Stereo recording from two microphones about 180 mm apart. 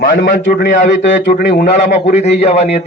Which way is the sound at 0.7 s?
45° left (ahead or behind).